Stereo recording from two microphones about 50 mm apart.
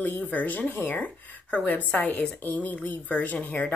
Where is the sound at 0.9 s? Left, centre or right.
Left.